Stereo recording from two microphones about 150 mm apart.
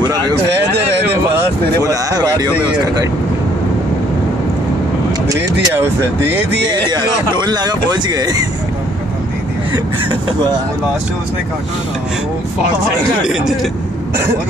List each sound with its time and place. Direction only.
0.0 s speech: 30° right (ahead or behind)
1.9 s speech: 25° right (ahead or behind)
5.3 s speech: 15° right (ahead or behind)
6.7 s speech: 30° right (ahead or behind)
13.3 s speech: 5° right (ahead or behind)